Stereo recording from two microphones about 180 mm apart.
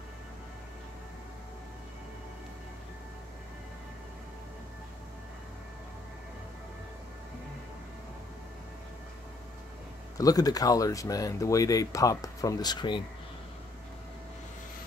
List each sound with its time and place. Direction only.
10.1 s speech: 20° left (ahead or behind)